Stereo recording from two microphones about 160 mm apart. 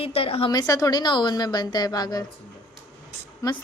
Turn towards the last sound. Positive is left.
turn(degrees=20)  # may be behind; listen again after turning